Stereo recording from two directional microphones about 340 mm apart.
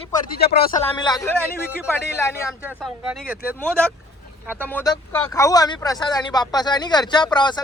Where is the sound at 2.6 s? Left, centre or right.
Centre.